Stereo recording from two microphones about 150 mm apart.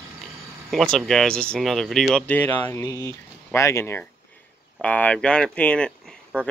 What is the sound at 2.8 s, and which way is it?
Speech, 25° left (ahead or behind).